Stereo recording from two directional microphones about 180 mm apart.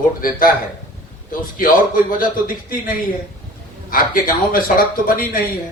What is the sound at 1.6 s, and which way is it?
A man's voice, 50° left (ahead or behind).